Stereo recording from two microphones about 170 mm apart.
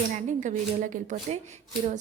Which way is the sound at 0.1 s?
45° right (ahead or behind).